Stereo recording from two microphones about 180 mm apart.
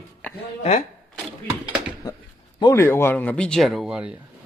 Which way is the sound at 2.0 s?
20° left (ahead or behind).